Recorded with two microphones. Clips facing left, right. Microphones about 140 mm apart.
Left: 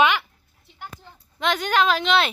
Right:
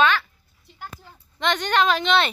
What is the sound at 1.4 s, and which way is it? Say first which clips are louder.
Speech: even; 5° left (ahead or behind).